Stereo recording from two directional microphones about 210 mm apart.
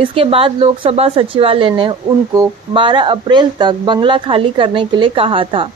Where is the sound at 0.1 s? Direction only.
25° right (ahead or behind).